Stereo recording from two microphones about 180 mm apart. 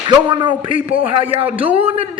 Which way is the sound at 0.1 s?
25° right (ahead or behind).